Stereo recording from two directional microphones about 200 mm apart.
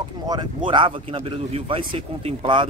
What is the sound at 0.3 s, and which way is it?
Speech, 25° right (ahead or behind).